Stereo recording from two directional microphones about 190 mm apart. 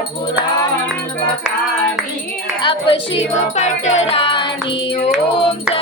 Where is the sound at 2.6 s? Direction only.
30° left (ahead or behind).